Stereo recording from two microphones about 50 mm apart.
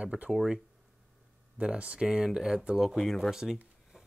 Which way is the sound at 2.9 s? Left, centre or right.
Centre.